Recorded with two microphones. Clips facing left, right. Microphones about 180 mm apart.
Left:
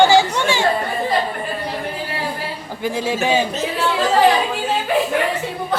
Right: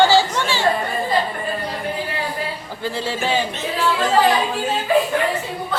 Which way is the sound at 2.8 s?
15° left (ahead or behind).